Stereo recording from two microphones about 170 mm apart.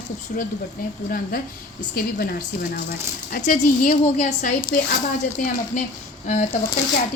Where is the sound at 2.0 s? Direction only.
60° left (ahead or behind).